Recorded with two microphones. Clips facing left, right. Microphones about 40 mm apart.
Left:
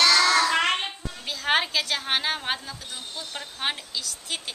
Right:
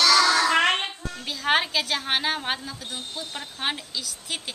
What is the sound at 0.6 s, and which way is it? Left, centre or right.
Child singing, centre.